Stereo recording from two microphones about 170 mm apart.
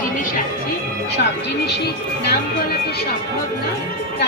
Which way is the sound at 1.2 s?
80° left.